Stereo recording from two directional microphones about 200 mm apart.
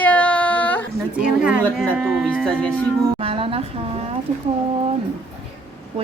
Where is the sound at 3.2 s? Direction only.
30° right (ahead or behind).